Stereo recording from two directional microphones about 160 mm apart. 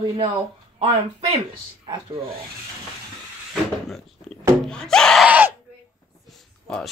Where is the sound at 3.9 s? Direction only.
5° left (ahead or behind).